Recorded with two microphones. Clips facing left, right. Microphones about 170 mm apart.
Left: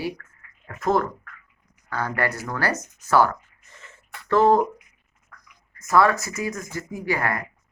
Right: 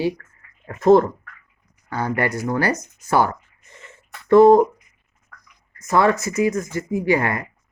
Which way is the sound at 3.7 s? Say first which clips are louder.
Right 2 dB; 15° right (ahead or behind).